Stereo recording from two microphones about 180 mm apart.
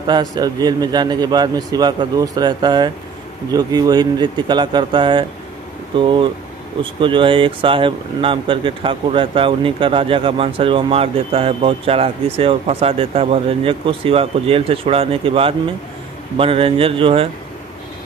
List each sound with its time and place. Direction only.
0.0 s a man's voice: 20° right (ahead or behind)